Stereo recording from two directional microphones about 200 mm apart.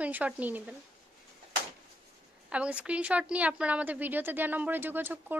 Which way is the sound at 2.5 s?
5° right (ahead or behind).